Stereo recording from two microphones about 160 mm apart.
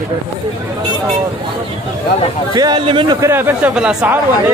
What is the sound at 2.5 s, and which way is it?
Speech, 25° right (ahead or behind).